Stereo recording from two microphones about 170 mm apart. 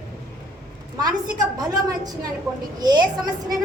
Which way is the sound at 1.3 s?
20° right (ahead or behind).